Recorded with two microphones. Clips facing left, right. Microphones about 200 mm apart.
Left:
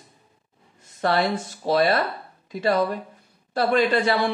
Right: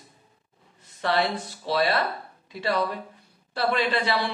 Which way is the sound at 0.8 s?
45° left (ahead or behind).